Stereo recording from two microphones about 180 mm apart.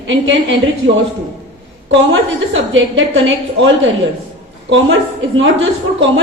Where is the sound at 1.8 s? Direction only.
90° right.